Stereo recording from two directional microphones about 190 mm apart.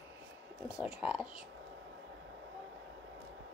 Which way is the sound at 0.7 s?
5° right (ahead or behind).